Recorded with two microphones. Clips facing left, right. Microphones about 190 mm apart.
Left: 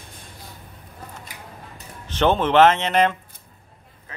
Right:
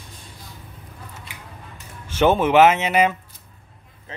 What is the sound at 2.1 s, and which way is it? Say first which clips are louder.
Speech: right 2 dB; 10° right (ahead or behind).